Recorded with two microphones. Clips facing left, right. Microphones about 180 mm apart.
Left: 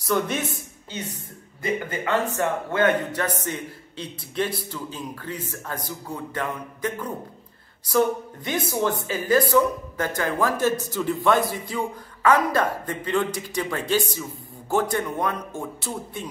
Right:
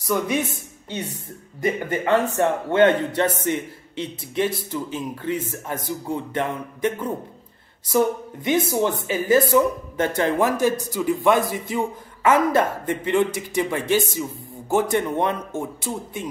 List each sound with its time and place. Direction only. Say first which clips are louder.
0.1 s speech: even; 10° right (ahead or behind)
1.6 s speech: right 4 dB; 25° right (ahead or behind)
8.5 s speech: right 4 dB; 20° right (ahead or behind)
10.6 s speech: right 2 dB; 10° right (ahead or behind)